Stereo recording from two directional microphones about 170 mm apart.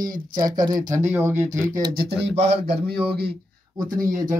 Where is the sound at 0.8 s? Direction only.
50° right (ahead or behind).